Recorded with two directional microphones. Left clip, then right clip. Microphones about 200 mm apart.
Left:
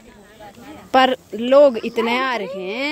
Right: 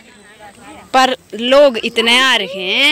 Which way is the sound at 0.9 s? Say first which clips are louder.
Right 3 dB; 5° left (ahead or behind).